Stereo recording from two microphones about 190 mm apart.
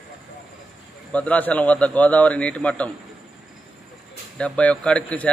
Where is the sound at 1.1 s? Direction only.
5° left (ahead or behind).